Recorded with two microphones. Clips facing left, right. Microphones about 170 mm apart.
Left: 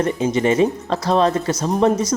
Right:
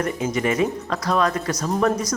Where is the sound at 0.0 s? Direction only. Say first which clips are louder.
Left 5 dB; 25° left (ahead or behind).